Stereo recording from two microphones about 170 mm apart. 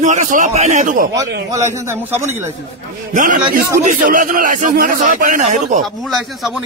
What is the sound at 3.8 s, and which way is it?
A man's voice, 55° right (ahead or behind).